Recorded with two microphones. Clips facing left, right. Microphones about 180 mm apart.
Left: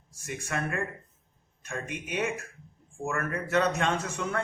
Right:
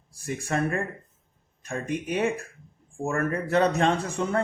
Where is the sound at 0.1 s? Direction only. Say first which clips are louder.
Right 5 dB; 35° right (ahead or behind).